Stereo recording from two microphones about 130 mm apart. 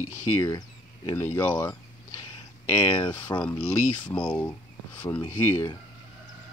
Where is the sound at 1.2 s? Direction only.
15° left (ahead or behind).